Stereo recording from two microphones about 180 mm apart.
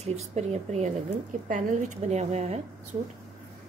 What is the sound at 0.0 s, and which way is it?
A woman's voice, 40° right (ahead or behind).